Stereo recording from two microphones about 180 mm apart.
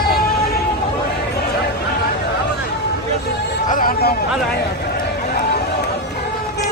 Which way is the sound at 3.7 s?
50° left (ahead or behind).